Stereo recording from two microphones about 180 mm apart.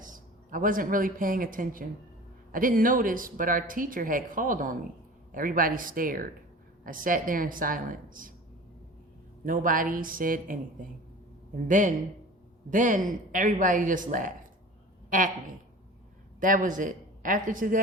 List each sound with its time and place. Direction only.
0.0 s speech: 50° right (ahead or behind)
9.4 s speech: 50° right (ahead or behind)